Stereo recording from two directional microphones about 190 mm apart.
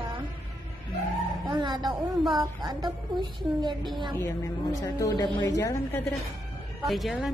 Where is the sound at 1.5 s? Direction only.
25° right (ahead or behind).